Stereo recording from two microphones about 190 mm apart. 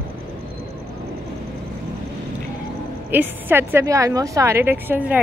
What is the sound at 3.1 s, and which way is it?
A woman's voice, 10° right (ahead or behind).